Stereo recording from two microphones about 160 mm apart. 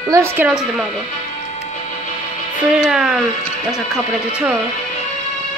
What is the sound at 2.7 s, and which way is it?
Speech, 5° right (ahead or behind).